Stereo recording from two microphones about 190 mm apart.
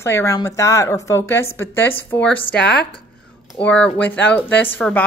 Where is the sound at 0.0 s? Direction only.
15° left (ahead or behind).